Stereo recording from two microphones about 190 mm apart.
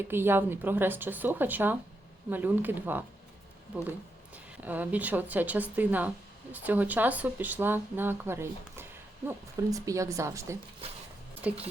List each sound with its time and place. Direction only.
0.0 s speech: 10° right (ahead or behind)